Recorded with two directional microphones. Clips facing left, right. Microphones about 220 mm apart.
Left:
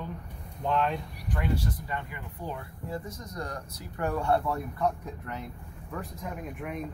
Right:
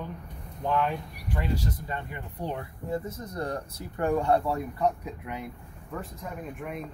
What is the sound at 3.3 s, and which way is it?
Speech, 30° right (ahead or behind).